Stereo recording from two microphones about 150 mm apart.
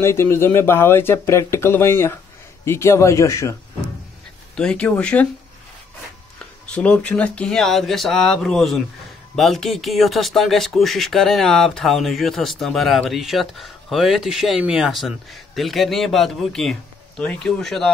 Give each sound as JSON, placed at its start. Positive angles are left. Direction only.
{"t": 0.0, "sound": "speech", "side_deg": 15}
{"t": 4.6, "sound": "speech", "side_deg": 5}
{"t": 6.6, "sound": "speech", "side_deg": 10}